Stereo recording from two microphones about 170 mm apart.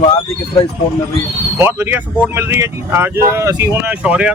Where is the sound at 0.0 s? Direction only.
30° left (ahead or behind).